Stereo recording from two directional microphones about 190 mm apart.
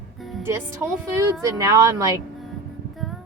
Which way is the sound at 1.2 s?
15° right (ahead or behind).